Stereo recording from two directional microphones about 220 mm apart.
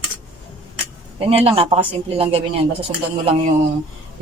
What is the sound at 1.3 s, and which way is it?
Speech, 25° right (ahead or behind).